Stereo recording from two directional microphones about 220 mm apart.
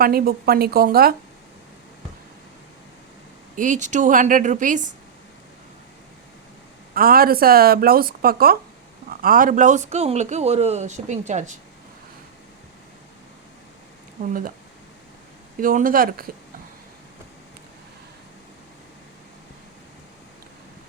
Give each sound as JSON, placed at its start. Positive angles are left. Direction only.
{"t": 0.0, "sound": "speech", "side_deg": -45}
{"t": 3.5, "sound": "a man's voice", "side_deg": -35}
{"t": 6.9, "sound": "a man's voice", "side_deg": -40}
{"t": 14.2, "sound": "a man's voice", "side_deg": -40}
{"t": 15.6, "sound": "a man's voice", "side_deg": -40}